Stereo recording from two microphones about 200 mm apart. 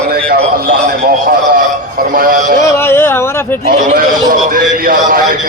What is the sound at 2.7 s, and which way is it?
Speech, 10° left (ahead or behind).